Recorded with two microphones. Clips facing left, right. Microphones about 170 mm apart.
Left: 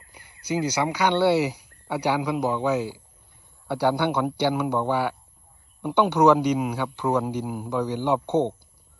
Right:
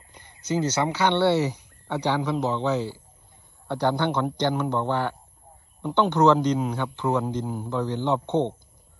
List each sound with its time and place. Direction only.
0.1 s a man's voice: 10° left (ahead or behind)